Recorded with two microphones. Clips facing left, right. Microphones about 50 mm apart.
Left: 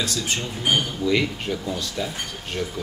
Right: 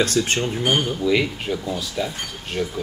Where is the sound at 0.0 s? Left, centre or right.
Right.